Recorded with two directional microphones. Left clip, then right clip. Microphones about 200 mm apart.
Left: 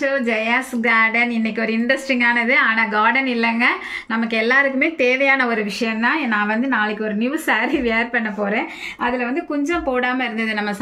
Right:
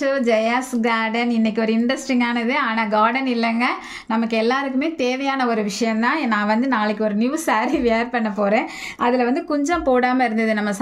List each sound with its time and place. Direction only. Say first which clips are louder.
0.0 s a woman's voice: right 1 dB; 70° right (ahead or behind)